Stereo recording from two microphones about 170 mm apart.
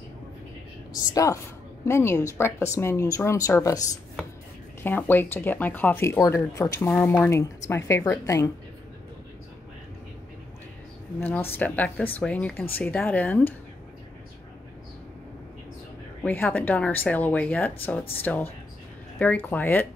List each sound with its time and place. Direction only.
1.1 s a woman's voice: 20° left (ahead or behind)
4.8 s speech: 10° left (ahead or behind)
11.1 s speech: 10° left (ahead or behind)
16.2 s speech: 10° left (ahead or behind)